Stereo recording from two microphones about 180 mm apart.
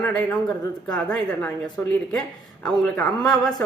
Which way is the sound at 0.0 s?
10° left (ahead or behind).